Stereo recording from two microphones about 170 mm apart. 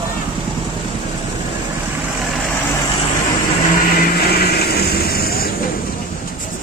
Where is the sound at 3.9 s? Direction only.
70° left (ahead or behind).